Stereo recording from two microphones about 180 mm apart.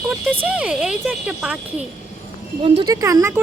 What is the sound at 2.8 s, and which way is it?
Speech, 20° right (ahead or behind).